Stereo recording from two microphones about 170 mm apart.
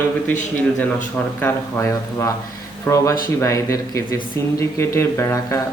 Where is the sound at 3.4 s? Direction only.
15° left (ahead or behind).